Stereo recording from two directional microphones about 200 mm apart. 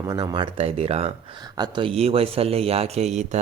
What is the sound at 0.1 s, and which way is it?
Speech, 20° right (ahead or behind).